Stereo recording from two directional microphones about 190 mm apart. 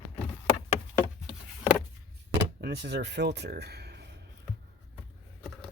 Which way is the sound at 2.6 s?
60° right (ahead or behind).